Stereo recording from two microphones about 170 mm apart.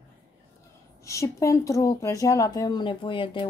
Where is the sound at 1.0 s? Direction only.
20° left (ahead or behind).